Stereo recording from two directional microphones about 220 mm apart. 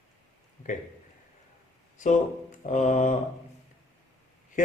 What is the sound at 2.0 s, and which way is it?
A man's voice, 35° left (ahead or behind).